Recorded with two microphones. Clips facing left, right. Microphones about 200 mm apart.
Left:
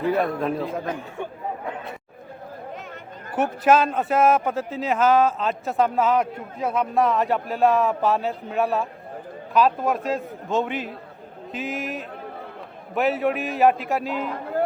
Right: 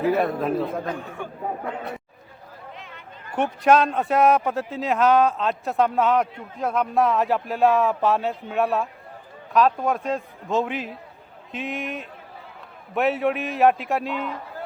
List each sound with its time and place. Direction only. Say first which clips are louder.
0.0 s speech: right 1 dB; centre (ahead or behind)
3.3 s speech: even; 5° left (ahead or behind)
14.3 s music: left 9 dB; 55° left (ahead or behind)